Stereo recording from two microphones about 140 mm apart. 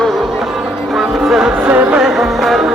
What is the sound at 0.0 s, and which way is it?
Music, centre (ahead or behind).